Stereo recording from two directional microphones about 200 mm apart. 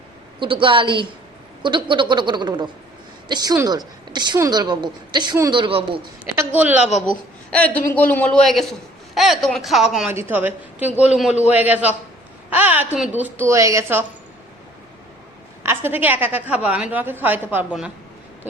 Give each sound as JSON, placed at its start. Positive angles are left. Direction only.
{"t": 0.3, "sound": "a woman's voice", "side_deg": -25}
{"t": 6.3, "sound": "a woman's voice", "side_deg": -10}
{"t": 7.5, "sound": "a man's voice", "side_deg": 5}
{"t": 15.6, "sound": "a woman's voice", "side_deg": -10}